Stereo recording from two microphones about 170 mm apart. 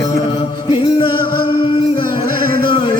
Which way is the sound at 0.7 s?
30° left (ahead or behind).